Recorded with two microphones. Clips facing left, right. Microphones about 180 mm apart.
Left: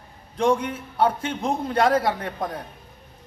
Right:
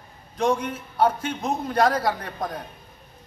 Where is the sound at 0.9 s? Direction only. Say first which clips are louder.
Even; 30° left (ahead or behind).